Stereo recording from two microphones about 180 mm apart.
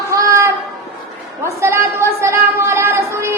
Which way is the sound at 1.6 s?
15° right (ahead or behind).